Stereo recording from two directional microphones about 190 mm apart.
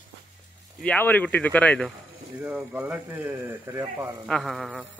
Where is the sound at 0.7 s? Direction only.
10° left (ahead or behind); by 4.2 s 20° right (ahead or behind).